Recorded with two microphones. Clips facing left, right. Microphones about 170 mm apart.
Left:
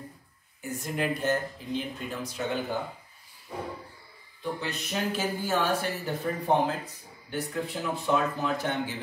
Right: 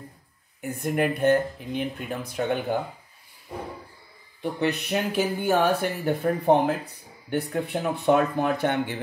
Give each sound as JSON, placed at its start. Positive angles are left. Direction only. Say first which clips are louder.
{"t": 0.6, "sound": "speech", "louder": "right 6 dB", "side_deg": -60}
{"t": 4.4, "sound": "speech", "louder": "right 7 dB", "side_deg": -65}